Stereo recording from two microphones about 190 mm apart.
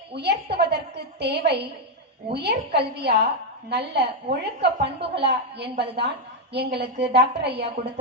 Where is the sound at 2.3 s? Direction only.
60° right (ahead or behind).